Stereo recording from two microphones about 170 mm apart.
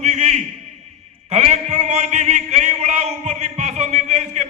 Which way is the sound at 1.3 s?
45° right (ahead or behind).